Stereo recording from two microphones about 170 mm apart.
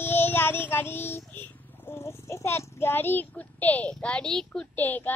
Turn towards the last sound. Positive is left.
turn(degrees=10)  # may be behind; listen again after turning